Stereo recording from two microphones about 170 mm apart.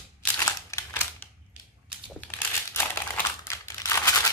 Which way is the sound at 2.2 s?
10° left (ahead or behind).